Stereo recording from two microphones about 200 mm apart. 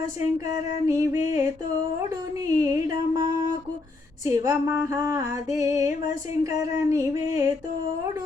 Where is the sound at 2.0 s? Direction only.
15° right (ahead or behind).